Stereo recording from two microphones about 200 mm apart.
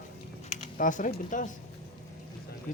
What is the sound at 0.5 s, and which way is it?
Speech, 40° left (ahead or behind).